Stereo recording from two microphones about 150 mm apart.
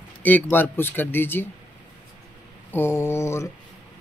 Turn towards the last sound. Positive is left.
turn(degrees=20)  # may be behind; listen again after turning